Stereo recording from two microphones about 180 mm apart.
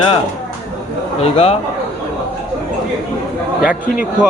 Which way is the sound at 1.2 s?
35° left (ahead or behind).